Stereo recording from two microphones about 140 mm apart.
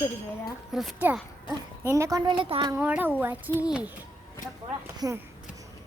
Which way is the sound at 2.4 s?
35° right (ahead or behind).